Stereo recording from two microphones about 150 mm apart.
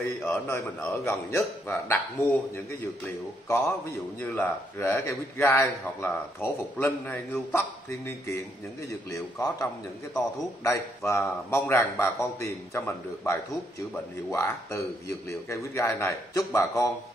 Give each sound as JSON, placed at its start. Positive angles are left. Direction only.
{"t": 0.2, "sound": "a man's voice", "side_deg": 15}
{"t": 9.1, "sound": "a man's voice", "side_deg": 20}
{"t": 11.0, "sound": "a man's voice", "side_deg": 15}